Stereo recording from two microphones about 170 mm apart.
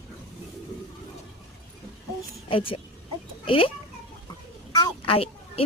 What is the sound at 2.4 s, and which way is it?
Speech, 30° left (ahead or behind).